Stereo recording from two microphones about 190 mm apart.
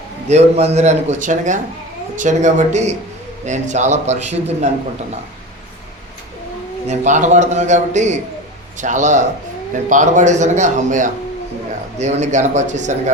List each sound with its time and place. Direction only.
0.3 s a man's voice: 35° right (ahead or behind)
6.8 s a man's voice: 35° right (ahead or behind)